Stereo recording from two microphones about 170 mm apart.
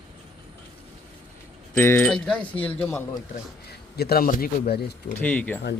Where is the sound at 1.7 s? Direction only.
10° left (ahead or behind).